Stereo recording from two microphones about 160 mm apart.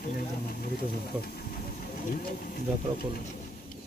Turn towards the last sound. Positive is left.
turn(degrees=65)  # may be behind; listen again after turning